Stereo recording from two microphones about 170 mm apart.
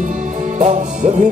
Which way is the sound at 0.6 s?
45° right (ahead or behind).